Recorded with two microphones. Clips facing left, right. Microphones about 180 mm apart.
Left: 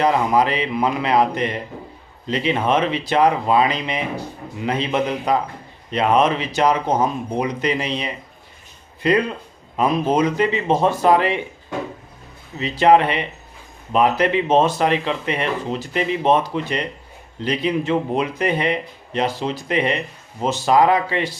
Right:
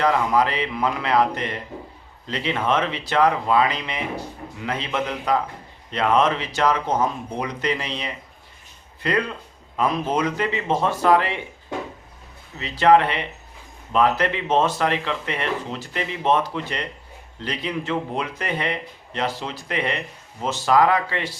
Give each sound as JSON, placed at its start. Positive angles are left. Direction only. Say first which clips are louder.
{"t": 0.0, "sound": "speech", "louder": "left 2 dB", "side_deg": 20}
{"t": 12.5, "sound": "speech", "louder": "left 2 dB", "side_deg": 15}